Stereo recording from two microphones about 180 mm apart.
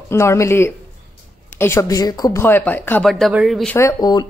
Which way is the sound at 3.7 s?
15° left (ahead or behind).